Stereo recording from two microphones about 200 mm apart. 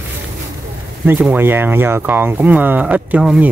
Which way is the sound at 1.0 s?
10° right (ahead or behind).